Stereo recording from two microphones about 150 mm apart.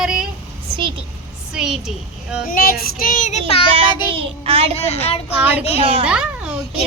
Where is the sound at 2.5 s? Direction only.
80° left; by 4.0 s 40° left (ahead or behind).